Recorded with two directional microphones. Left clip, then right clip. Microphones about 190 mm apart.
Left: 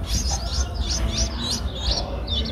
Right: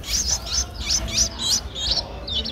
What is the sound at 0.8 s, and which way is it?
Chirp, 25° right (ahead or behind).